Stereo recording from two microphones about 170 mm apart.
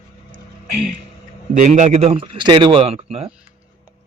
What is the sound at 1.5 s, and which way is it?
A man's voice, 45° right (ahead or behind).